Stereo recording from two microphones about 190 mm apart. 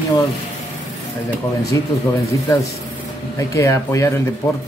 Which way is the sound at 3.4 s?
15° left (ahead or behind).